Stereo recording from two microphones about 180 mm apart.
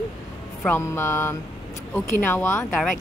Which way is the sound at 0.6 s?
15° left (ahead or behind).